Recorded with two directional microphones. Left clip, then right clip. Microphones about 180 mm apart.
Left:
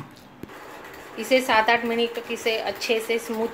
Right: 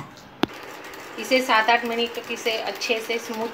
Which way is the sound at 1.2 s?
50° left (ahead or behind).